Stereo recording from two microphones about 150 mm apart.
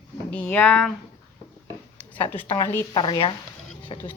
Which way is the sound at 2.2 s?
10° left (ahead or behind).